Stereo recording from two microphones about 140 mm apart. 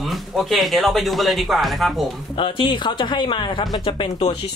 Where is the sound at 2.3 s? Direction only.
35° left (ahead or behind).